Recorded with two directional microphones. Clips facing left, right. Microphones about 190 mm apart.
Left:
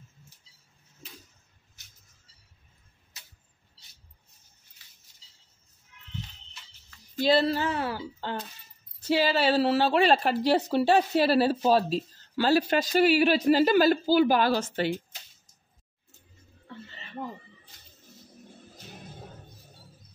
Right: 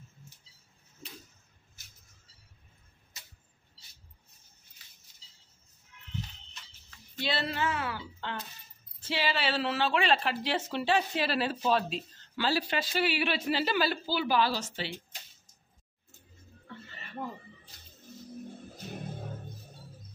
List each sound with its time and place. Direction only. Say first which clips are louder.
7.2 s speech: left 9 dB; 40° left (ahead or behind)